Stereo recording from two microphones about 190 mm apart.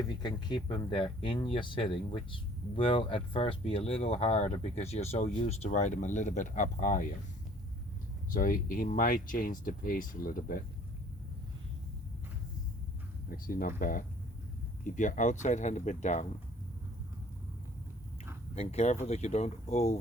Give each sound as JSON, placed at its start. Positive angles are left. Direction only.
{"t": 0.2, "sound": "speech", "side_deg": 20}
{"t": 8.3, "sound": "speech", "side_deg": 45}
{"t": 13.3, "sound": "speech", "side_deg": 45}
{"t": 18.5, "sound": "speech", "side_deg": 35}